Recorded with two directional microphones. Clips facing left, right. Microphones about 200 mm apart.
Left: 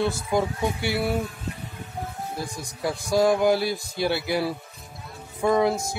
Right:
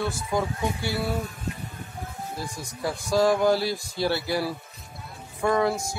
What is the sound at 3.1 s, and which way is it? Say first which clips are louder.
Speech: left 1 dB; 15° left (ahead or behind).